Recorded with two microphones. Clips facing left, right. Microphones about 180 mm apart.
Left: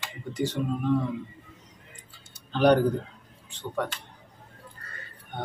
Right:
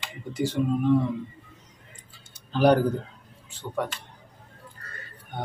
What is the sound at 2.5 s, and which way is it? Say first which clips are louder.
Speech: even; 5° right (ahead or behind).